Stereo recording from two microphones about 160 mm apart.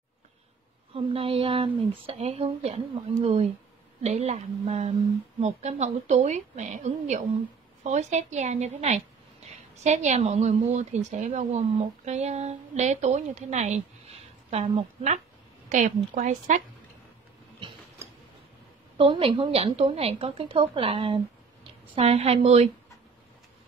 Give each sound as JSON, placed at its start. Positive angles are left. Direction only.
{"t": 0.9, "sound": "a woman's voice", "side_deg": -35}
{"t": 4.0, "sound": "a woman's voice", "side_deg": -45}
{"t": 17.6, "sound": "mechanisms", "side_deg": -30}
{"t": 18.9, "sound": "a woman's voice", "side_deg": -35}